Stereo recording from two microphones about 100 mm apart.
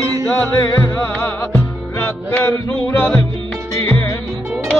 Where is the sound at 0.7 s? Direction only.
25° left (ahead or behind).